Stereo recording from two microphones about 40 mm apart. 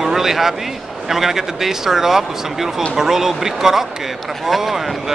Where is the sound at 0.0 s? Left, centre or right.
Centre.